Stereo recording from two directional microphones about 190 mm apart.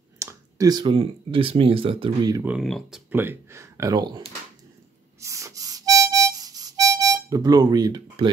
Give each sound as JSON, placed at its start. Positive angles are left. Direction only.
{"t": 0.2, "sound": "speech", "side_deg": -15}
{"t": 2.3, "sound": "speech", "side_deg": -10}
{"t": 2.6, "sound": "speech", "side_deg": 0}
{"t": 3.1, "sound": "speech", "side_deg": -10}
{"t": 5.2, "sound": "harmonica", "side_deg": -15}